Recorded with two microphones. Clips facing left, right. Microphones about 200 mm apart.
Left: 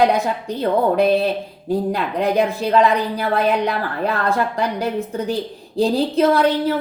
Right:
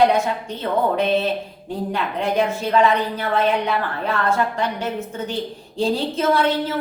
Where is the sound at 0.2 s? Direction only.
35° left (ahead or behind).